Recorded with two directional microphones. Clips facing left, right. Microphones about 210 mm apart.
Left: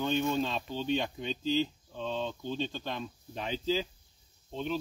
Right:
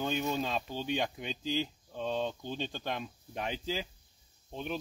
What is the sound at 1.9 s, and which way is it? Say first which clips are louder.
Speech: right 1 dB; 50° right (ahead or behind).